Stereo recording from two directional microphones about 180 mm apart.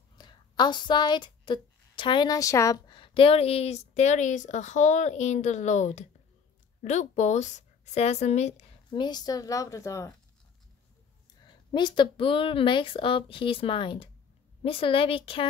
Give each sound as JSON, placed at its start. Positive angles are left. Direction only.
{"t": 0.2, "sound": "a woman's voice", "side_deg": 25}
{"t": 8.9, "sound": "speech", "side_deg": 25}
{"t": 11.4, "sound": "speech", "side_deg": 25}